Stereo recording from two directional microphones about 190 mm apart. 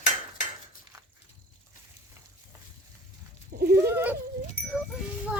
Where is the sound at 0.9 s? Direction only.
15° right (ahead or behind).